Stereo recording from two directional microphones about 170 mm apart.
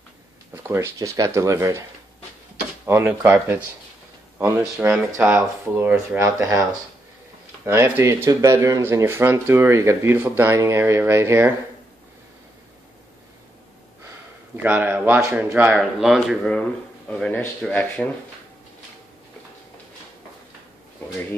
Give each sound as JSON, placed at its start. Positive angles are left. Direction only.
{"t": 0.7, "sound": "speech", "side_deg": -15}
{"t": 2.9, "sound": "speech", "side_deg": -10}
{"t": 7.6, "sound": "speech", "side_deg": -15}
{"t": 14.6, "sound": "speech", "side_deg": -10}